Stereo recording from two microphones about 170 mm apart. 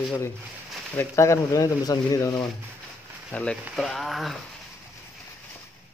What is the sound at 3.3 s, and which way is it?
Speech, 5° left (ahead or behind).